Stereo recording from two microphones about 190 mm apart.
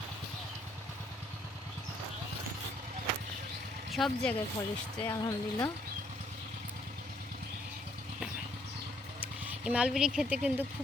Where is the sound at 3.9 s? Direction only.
Centre (ahead or behind).